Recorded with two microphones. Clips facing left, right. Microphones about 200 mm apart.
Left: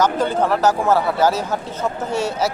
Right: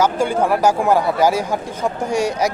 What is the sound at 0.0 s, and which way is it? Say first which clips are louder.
Speech: right 1 dB; 10° right (ahead or behind).